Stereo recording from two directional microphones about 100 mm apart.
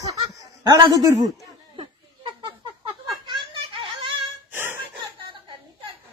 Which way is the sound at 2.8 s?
55° right (ahead or behind).